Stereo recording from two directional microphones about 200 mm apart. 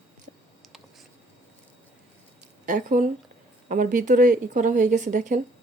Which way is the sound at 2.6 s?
40° right (ahead or behind).